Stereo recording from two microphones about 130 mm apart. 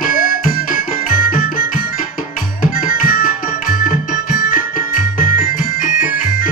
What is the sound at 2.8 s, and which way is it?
Music, 90° left.